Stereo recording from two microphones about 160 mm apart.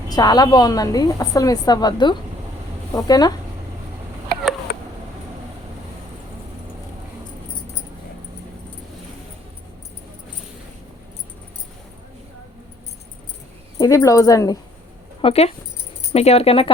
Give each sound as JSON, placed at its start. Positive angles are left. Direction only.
{"t": 0.1, "sound": "a woman's voice", "side_deg": 25}
{"t": 4.7, "sound": "cat", "side_deg": 80}
{"t": 13.7, "sound": "a woman's voice", "side_deg": 20}
{"t": 15.2, "sound": "speech", "side_deg": 35}